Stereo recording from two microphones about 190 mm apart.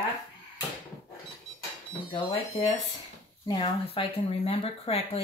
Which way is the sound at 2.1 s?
25° left (ahead or behind).